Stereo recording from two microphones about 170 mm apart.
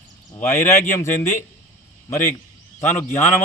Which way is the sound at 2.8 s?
10° left (ahead or behind).